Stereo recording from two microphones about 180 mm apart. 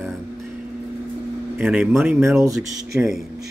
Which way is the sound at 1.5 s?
5° right (ahead or behind).